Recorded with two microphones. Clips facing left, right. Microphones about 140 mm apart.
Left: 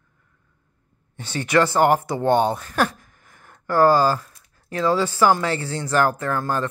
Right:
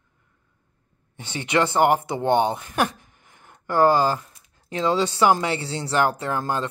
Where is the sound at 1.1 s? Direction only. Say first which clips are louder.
Left 3 dB; 20° right (ahead or behind).